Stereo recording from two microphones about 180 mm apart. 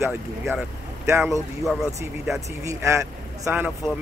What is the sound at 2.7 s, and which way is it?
Speech, 15° right (ahead or behind).